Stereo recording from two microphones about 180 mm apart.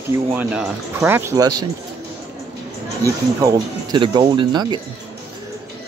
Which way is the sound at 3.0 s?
20° right (ahead or behind).